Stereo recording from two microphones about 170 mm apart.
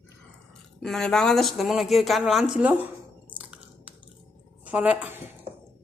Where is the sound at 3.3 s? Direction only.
10° right (ahead or behind).